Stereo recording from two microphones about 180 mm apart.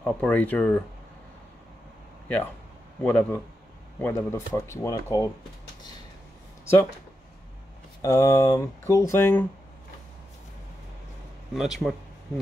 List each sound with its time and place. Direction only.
0.0 s speech: 10° left (ahead or behind)
3.0 s speech: 5° left (ahead or behind)
8.0 s speech: 15° left (ahead or behind)
11.5 s speech: centre (ahead or behind)